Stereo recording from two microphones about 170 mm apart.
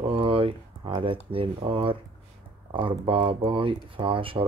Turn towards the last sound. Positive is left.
turn(degrees=-30)  # may be behind; listen again after turning